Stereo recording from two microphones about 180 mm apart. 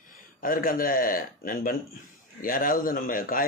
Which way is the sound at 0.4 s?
50° left (ahead or behind).